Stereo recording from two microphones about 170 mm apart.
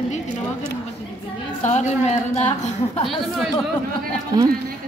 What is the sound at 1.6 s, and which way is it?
A woman's voice, 45° left (ahead or behind).